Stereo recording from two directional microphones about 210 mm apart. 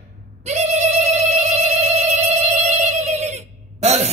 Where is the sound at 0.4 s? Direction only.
30° right (ahead or behind).